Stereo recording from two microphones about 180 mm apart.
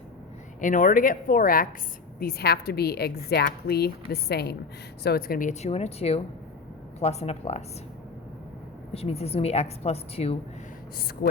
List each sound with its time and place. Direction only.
0.6 s a woman's voice: 45° left (ahead or behind)
8.9 s a woman's voice: 35° left (ahead or behind)